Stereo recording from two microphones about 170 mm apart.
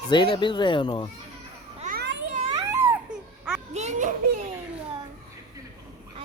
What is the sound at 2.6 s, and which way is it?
Baby cry, 15° right (ahead or behind).